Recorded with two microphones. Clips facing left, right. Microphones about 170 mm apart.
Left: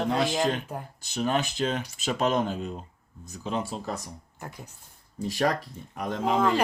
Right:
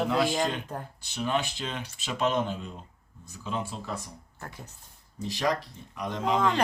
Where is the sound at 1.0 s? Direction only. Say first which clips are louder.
Left 3 dB; 40° left (ahead or behind).